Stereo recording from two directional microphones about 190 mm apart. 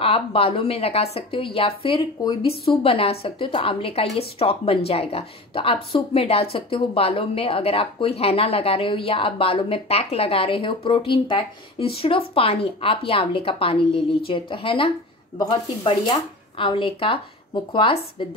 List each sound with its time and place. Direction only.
0.0 s speech: 30° left (ahead or behind)